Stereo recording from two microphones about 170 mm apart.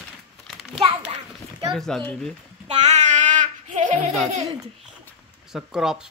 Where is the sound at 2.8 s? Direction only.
45° right (ahead or behind).